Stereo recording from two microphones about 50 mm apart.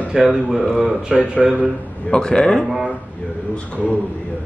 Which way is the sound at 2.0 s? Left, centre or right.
Centre.